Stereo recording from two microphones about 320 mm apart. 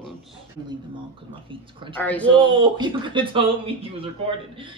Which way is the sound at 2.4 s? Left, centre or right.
Centre.